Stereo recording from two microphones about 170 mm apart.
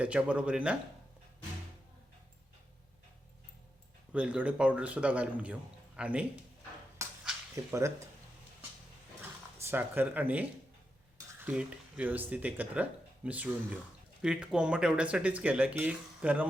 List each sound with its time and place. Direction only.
0.0 s speech: 5° right (ahead or behind)
4.1 s speech: 10° right (ahead or behind)
7.5 s speech: 15° right (ahead or behind)
9.6 s speech: 15° right (ahead or behind)